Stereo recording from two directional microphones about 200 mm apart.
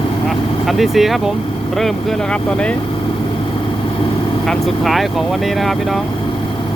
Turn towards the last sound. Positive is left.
turn(degrees=0)  # may be behind; listen again after turning